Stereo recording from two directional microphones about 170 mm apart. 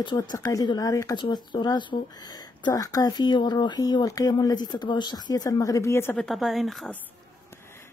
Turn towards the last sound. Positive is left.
turn(degrees=15)  # may be behind; listen again after turning